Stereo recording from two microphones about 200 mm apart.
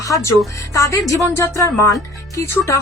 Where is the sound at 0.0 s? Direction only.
15° left (ahead or behind).